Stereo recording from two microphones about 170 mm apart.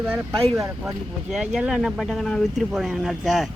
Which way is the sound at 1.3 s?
5° right (ahead or behind).